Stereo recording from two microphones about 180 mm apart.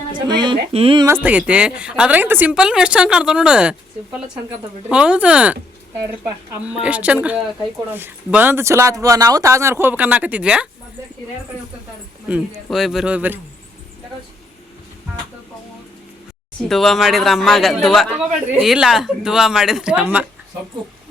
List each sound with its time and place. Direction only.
0.3 s speech: 25° right (ahead or behind)
1.0 s a woman's voice: 10° right (ahead or behind)
12.7 s a woman's voice: centre (ahead or behind)
16.6 s a woman's voice: centre (ahead or behind)